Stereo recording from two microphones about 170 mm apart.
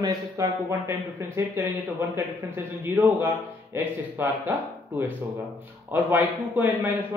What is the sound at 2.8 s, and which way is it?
A man's voice, 15° right (ahead or behind).